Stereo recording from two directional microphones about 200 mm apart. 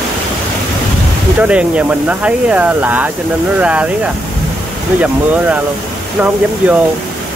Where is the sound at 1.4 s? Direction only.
5° right (ahead or behind).